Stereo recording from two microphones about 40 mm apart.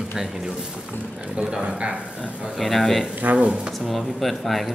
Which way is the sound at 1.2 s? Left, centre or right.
Right.